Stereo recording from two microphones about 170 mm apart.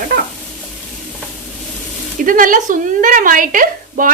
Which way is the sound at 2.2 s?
50° right (ahead or behind).